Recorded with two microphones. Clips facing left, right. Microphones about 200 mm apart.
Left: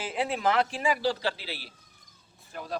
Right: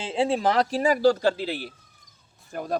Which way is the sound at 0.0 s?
30° right (ahead or behind).